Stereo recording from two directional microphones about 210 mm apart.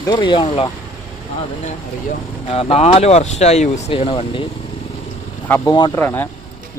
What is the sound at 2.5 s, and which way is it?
Speech, 30° left (ahead or behind).